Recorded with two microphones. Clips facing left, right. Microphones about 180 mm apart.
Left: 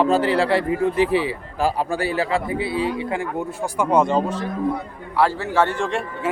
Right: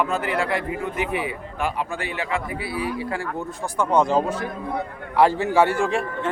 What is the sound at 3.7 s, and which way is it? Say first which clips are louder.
Speech: left 1 dB; 10° left (ahead or behind).